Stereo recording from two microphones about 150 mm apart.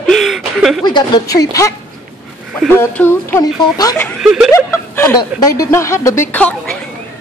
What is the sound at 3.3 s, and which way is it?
Speech, 25° left (ahead or behind).